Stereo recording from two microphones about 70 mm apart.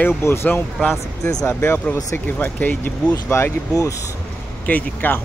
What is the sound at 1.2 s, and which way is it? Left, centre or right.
Speech, left.